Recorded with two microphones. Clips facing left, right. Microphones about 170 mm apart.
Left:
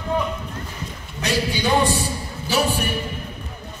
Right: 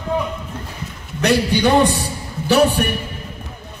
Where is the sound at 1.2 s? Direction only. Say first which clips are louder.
Right 7 dB; 65° right (ahead or behind).